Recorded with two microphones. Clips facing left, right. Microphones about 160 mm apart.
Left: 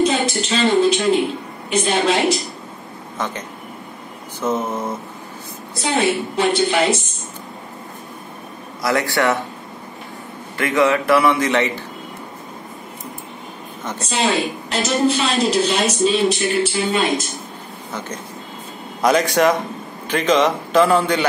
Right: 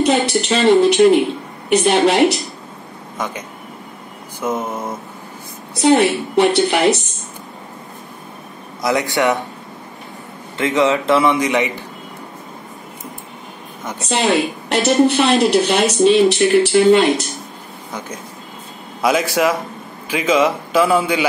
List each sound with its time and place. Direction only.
0.0 s a woman's voice: 65° right (ahead or behind)
3.2 s a man's voice: 10° right (ahead or behind)
4.4 s a man's voice: 10° right (ahead or behind)
5.8 s a woman's voice: 70° right (ahead or behind)
8.8 s a man's voice: 20° right (ahead or behind)
10.6 s a man's voice: 20° right (ahead or behind)
13.9 s a woman's voice: 65° right (ahead or behind)
17.9 s a man's voice: 10° right (ahead or behind)